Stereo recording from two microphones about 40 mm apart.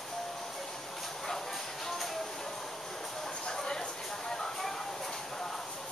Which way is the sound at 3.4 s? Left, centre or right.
Centre.